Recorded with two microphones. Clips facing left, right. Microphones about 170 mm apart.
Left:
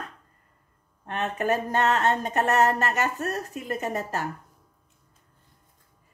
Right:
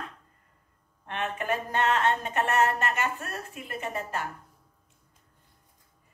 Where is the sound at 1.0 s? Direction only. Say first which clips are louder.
Left 5 dB; 40° left (ahead or behind).